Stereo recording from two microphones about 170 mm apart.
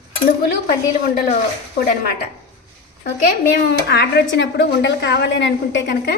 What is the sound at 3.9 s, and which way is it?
A woman's voice, 80° left.